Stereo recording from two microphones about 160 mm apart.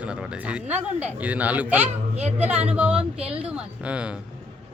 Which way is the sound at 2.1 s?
45° right (ahead or behind).